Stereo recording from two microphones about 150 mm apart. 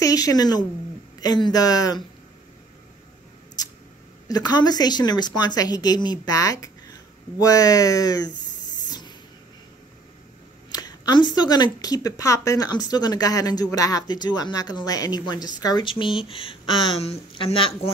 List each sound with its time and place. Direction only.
0.0 s a woman's voice: 25° left (ahead or behind)
4.3 s speech: 25° left (ahead or behind)
8.8 s a sound: 30° left (ahead or behind)
10.7 s speech: 25° left (ahead or behind)